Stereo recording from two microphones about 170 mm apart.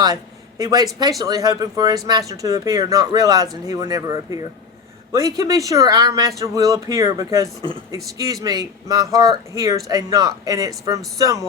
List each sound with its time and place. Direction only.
0.6 s speech: 20° right (ahead or behind)